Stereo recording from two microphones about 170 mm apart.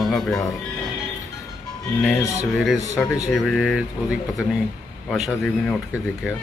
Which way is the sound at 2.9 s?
20° left (ahead or behind).